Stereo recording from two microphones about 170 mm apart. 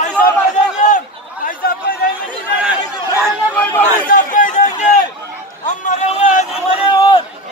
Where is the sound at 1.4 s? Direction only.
60° left (ahead or behind).